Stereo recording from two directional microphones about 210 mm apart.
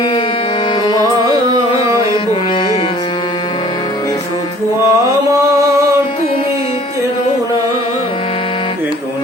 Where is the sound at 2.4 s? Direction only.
25° left (ahead or behind).